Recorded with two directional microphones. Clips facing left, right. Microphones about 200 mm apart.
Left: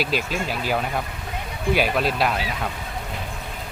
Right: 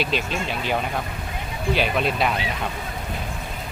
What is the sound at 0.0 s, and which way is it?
Speech, 5° left (ahead or behind).